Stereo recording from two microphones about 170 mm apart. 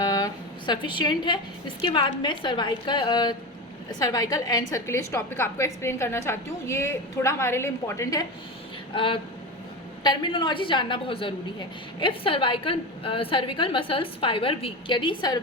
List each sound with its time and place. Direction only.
0.0 s a woman's voice: 20° left (ahead or behind)
9.0 s a woman's voice: 30° left (ahead or behind)